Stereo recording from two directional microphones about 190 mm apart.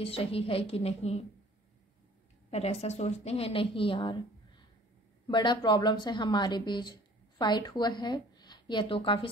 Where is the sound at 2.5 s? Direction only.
35° left (ahead or behind).